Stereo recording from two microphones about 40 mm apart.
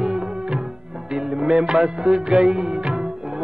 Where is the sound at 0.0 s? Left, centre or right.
Right.